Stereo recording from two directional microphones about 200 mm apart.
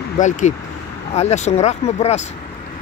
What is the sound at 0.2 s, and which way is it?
Speech, 40° left (ahead or behind).